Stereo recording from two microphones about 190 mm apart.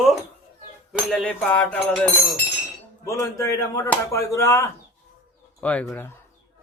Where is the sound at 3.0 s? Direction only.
15° left (ahead or behind).